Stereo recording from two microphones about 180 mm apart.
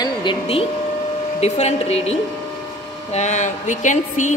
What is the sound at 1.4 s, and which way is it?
A woman's voice, 35° left (ahead or behind).